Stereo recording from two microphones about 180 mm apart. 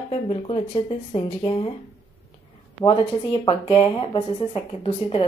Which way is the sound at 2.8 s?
30° left (ahead or behind).